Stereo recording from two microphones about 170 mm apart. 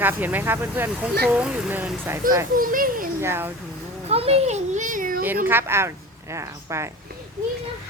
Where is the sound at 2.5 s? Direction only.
55° right (ahead or behind).